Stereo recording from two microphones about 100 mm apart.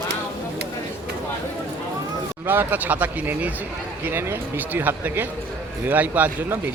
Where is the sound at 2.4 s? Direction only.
20° right (ahead or behind).